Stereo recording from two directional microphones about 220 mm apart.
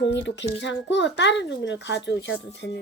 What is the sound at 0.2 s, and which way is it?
A child's voice, 55° left (ahead or behind).